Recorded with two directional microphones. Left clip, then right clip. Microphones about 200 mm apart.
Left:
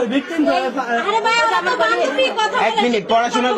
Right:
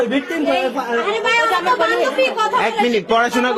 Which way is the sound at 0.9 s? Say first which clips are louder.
Left 2 dB; 25° right (ahead or behind).